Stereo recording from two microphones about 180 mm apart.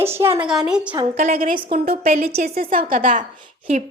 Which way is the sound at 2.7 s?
50° right (ahead or behind).